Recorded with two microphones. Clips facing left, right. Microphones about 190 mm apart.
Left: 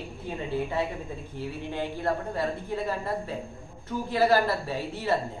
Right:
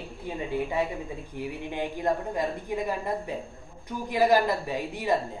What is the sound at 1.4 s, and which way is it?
Speech, 15° right (ahead or behind).